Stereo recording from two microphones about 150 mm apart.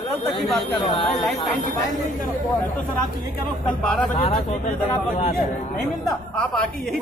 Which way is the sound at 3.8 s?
5° left (ahead or behind).